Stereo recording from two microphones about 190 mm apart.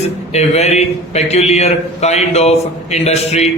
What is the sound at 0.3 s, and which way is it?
A man's voice, 35° left (ahead or behind).